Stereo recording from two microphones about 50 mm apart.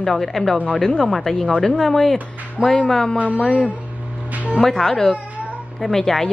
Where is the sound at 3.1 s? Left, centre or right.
Right.